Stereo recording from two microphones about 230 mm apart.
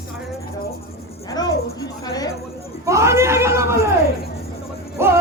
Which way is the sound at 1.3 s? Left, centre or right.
Centre.